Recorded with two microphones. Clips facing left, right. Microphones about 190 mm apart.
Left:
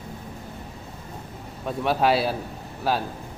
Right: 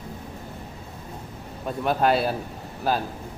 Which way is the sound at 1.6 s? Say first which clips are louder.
Even; centre (ahead or behind).